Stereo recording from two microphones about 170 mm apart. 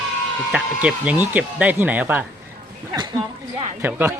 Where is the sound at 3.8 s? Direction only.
10° right (ahead or behind).